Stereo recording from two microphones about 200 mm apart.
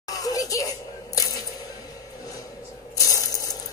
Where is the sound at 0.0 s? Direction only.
15° left (ahead or behind).